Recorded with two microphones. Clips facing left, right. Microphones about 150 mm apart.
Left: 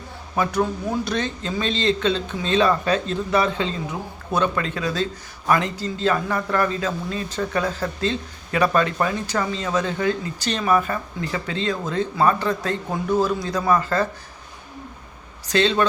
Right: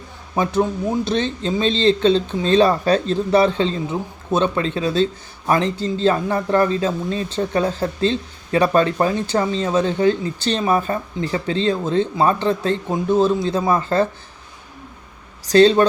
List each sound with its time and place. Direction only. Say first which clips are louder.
0.3 s a man's voice: right 3 dB; 25° right (ahead or behind)
15.4 s speech: right 7 dB; 35° right (ahead or behind)